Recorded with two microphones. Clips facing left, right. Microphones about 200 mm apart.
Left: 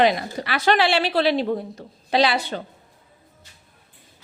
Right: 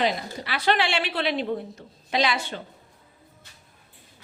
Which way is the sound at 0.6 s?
40° left (ahead or behind).